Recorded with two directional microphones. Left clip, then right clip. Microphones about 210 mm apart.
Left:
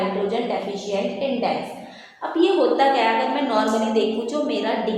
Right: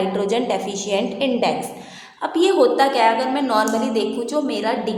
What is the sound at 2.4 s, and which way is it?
Speech, 30° right (ahead or behind).